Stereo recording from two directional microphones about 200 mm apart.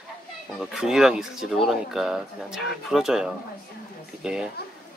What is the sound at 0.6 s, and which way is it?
Speech, 5° right (ahead or behind).